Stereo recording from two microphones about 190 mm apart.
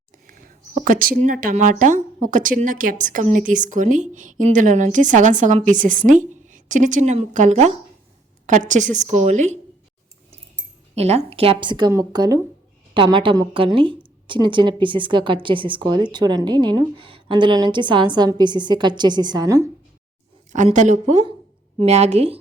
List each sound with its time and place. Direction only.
0.3 s a woman's voice: 45° right (ahead or behind)
10.9 s a woman's voice: 35° right (ahead or behind); by 19.6 s 20° right (ahead or behind)
20.5 s a woman's voice: 40° right (ahead or behind)